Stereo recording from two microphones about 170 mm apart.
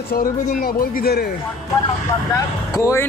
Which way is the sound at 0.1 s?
60° left (ahead or behind).